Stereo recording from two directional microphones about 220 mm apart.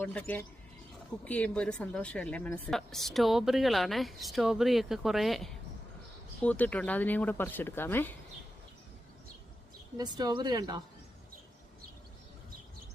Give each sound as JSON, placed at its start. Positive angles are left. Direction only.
{"t": 0.0, "sound": "speech", "side_deg": 5}
{"t": 10.0, "sound": "speech", "side_deg": -20}